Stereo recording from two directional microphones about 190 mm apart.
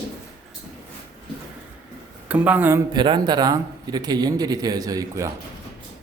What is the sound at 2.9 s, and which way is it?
A man's voice, 25° right (ahead or behind).